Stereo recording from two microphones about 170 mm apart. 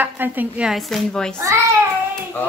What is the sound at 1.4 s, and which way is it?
Speech, 20° right (ahead or behind).